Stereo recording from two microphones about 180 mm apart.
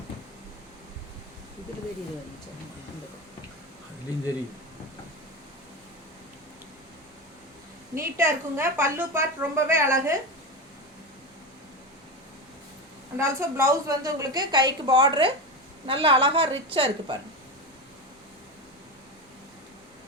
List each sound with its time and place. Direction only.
7.9 s a woman's voice: 15° right (ahead or behind)
13.1 s a woman's voice: 15° right (ahead or behind)